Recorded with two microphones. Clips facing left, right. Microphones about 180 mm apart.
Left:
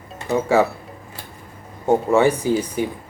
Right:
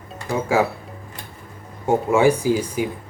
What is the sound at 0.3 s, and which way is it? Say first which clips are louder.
Speech: left 3 dB; 20° left (ahead or behind).